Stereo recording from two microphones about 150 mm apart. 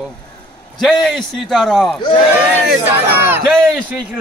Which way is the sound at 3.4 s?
Centre (ahead or behind).